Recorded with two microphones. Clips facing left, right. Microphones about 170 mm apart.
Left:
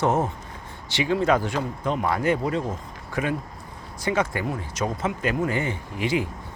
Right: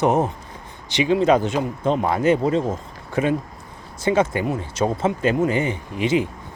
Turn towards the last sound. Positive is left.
turn(degrees=-20)  # may be behind; listen again after turning